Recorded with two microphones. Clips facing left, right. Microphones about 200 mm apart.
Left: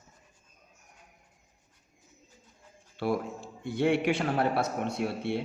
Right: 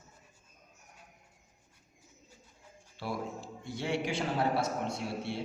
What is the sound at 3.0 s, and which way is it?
A man's voice, 60° left (ahead or behind).